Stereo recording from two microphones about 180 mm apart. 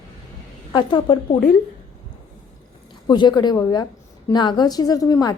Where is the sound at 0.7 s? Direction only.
25° left (ahead or behind).